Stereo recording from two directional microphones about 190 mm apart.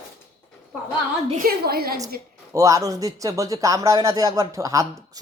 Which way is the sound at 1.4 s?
55° right (ahead or behind).